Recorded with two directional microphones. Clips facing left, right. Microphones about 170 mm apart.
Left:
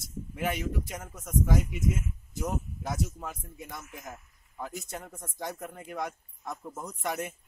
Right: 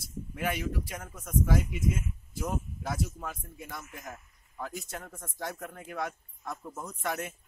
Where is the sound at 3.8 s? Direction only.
Centre (ahead or behind).